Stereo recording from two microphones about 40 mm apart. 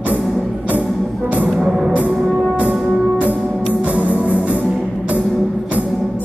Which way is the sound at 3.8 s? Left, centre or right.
Right.